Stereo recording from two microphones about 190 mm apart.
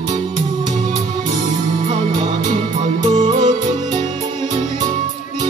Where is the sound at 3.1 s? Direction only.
30° right (ahead or behind).